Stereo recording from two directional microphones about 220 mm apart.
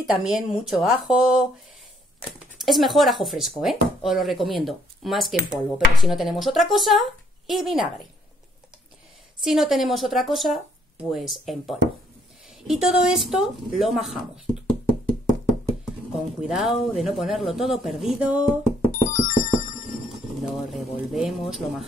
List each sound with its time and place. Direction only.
0.0 s speech: 5° right (ahead or behind)
2.5 s speech: centre (ahead or behind)
9.4 s speech: centre (ahead or behind)
16.3 s speech: centre (ahead or behind)
18.9 s music: 35° left (ahead or behind)
20.4 s speech: centre (ahead or behind)